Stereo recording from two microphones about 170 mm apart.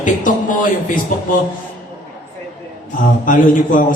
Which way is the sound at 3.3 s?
50° left (ahead or behind).